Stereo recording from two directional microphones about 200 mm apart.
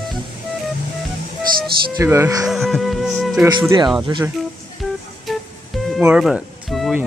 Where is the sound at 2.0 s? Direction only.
15° right (ahead or behind).